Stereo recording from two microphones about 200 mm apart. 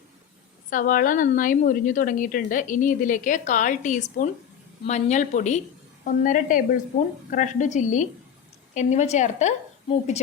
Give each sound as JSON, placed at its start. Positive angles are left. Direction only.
{"t": 0.7, "sound": "a woman's voice", "side_deg": 40}